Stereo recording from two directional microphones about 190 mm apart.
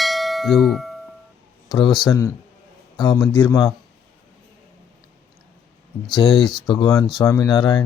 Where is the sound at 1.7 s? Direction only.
25° left (ahead or behind).